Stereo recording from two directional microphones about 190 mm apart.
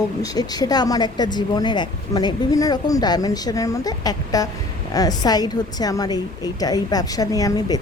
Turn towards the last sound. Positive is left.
turn(degrees=20)  # may be behind; listen again after turning